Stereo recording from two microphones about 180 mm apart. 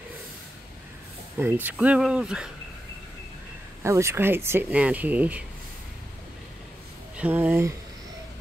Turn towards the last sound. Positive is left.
turn(degrees=-10)  # may be behind; listen again after turning